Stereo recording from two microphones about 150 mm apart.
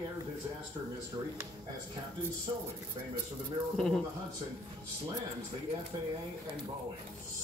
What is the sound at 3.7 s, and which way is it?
Speech, 5° left (ahead or behind).